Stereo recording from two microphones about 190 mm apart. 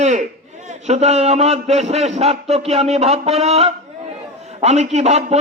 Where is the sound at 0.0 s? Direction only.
40° right (ahead or behind).